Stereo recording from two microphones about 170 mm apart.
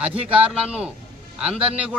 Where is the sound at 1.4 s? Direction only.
5° right (ahead or behind).